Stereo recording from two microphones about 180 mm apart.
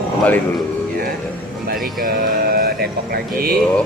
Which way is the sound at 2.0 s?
55° right (ahead or behind).